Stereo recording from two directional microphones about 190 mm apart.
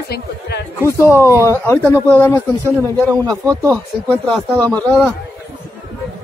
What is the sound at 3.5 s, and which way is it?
Speech, 20° right (ahead or behind).